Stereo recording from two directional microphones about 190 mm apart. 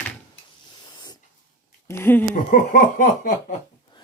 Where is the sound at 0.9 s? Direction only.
20° left (ahead or behind).